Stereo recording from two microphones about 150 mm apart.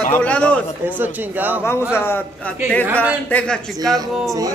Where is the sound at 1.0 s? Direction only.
10° right (ahead or behind).